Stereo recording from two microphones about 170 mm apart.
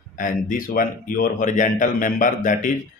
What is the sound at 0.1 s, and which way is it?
Speech, 50° left (ahead or behind).